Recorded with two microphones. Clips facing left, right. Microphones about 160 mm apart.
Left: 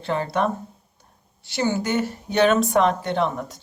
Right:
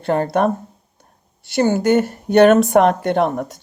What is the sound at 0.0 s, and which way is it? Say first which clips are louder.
Speech: right 6 dB; 50° right (ahead or behind).